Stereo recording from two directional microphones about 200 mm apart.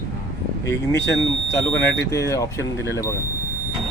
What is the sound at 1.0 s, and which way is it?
Speech, 60° left (ahead or behind).